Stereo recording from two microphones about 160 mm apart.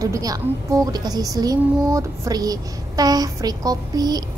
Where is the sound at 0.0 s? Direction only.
20° right (ahead or behind).